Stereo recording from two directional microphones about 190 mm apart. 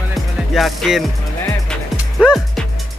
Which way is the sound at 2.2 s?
5° right (ahead or behind).